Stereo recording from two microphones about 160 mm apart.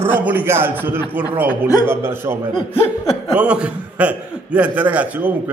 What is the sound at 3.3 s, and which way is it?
A man's voice, 10° right (ahead or behind).